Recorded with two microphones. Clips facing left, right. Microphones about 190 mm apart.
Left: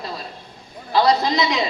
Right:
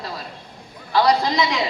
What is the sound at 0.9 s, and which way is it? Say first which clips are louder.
Speech: even; 20° left (ahead or behind).